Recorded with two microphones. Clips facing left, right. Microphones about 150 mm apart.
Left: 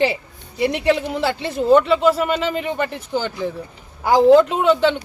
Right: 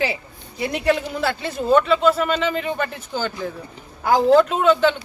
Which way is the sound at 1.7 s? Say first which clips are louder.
Left 2 dB; 15° left (ahead or behind).